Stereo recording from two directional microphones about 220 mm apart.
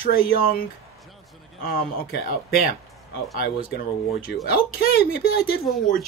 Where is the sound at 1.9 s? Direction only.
45° left (ahead or behind).